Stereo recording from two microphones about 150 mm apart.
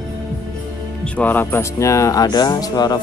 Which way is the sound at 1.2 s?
10° left (ahead or behind).